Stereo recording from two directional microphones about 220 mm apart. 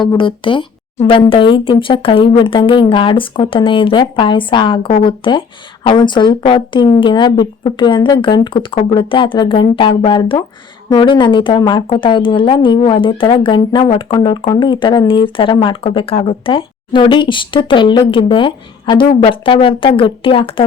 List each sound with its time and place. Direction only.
0.0 s speech: 20° left (ahead or behind)